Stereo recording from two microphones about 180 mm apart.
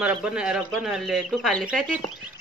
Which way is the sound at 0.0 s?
5° right (ahead or behind).